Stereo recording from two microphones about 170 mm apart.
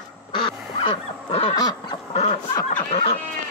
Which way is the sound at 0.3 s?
30° left (ahead or behind).